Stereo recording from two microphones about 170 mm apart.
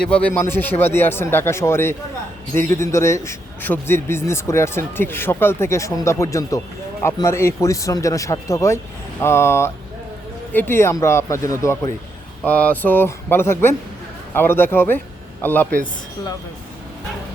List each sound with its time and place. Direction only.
0.0 s a man's voice: 5° left (ahead or behind)